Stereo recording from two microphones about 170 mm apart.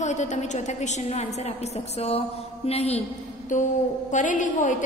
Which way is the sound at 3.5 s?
50° left (ahead or behind).